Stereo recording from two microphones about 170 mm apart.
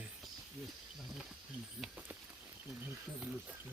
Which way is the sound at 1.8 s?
10° right (ahead or behind).